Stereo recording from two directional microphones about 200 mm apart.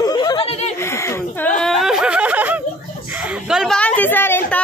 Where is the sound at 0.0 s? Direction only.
20° left (ahead or behind).